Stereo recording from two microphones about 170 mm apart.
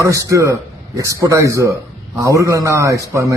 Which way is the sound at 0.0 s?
20° right (ahead or behind).